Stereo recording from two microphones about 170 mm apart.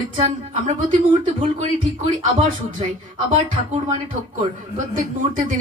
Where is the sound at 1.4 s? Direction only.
40° right (ahead or behind).